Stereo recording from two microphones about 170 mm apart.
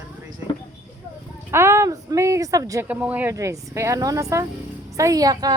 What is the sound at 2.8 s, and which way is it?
Speech, 10° right (ahead or behind).